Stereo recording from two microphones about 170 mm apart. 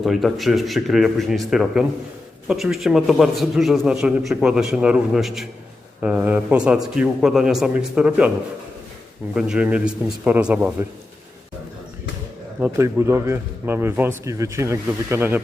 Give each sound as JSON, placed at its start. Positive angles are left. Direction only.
{"t": 0.0, "sound": "a man's voice", "side_deg": 0}
{"t": 9.3, "sound": "a man's voice", "side_deg": -5}
{"t": 12.5, "sound": "a man's voice", "side_deg": -15}